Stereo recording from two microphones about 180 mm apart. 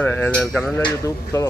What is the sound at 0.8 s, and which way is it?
Speech, 20° left (ahead or behind).